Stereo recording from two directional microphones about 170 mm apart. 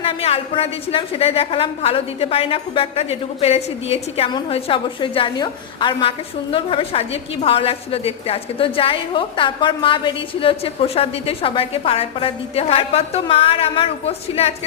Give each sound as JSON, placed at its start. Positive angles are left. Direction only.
{"t": 0.0, "sound": "a woman's voice", "side_deg": 35}